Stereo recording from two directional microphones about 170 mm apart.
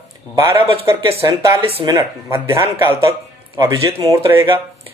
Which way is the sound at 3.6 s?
15° right (ahead or behind).